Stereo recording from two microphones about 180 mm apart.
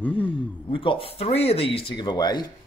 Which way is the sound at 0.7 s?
30° left (ahead or behind).